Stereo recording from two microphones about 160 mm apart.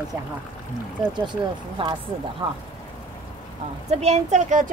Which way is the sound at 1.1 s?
30° right (ahead or behind).